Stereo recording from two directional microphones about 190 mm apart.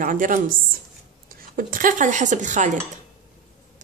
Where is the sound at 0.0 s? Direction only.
45° right (ahead or behind).